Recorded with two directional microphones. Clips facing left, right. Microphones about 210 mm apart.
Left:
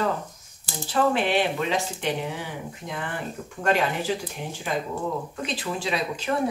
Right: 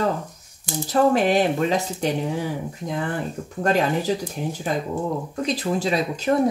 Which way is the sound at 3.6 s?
40° right (ahead or behind).